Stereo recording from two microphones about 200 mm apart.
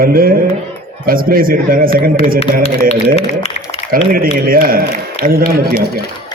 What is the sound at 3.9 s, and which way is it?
A man's voice, 45° right (ahead or behind).